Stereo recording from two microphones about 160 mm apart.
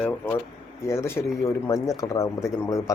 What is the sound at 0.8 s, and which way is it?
Speech, 15° left (ahead or behind).